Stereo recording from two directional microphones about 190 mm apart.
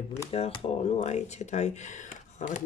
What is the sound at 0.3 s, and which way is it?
Speech, 30° left (ahead or behind).